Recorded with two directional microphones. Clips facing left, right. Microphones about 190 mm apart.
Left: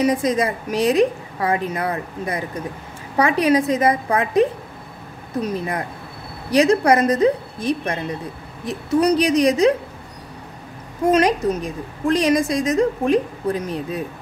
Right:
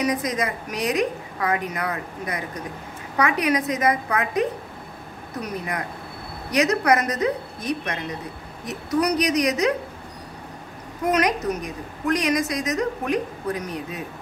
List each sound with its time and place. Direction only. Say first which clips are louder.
0.0 s a woman's voice: left 6 dB; 30° left (ahead or behind)
11.1 s a woman's voice: left 5 dB; 30° left (ahead or behind)